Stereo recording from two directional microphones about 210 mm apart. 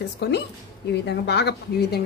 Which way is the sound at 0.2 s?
55° left (ahead or behind).